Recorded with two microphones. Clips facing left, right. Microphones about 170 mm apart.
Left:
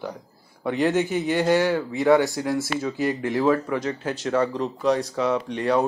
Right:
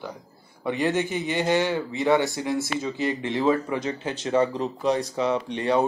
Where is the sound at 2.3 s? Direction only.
5° left (ahead or behind).